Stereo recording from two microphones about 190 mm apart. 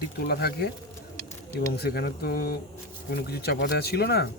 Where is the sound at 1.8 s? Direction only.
55° left (ahead or behind).